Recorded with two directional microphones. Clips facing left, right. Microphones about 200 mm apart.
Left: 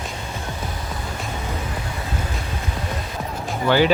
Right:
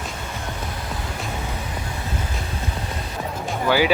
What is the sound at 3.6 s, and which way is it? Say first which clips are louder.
Speech: left 2 dB; 10° right (ahead or behind).